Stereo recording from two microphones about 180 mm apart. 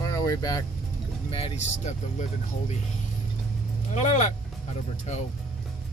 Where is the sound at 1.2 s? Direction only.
30° left (ahead or behind).